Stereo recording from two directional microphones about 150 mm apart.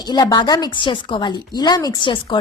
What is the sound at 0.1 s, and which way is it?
A woman's voice, 30° left (ahead or behind).